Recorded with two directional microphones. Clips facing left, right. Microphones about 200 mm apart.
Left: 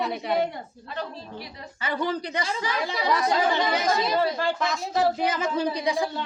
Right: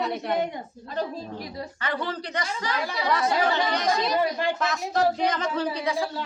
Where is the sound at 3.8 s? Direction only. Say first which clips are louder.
Even; 5° left (ahead or behind).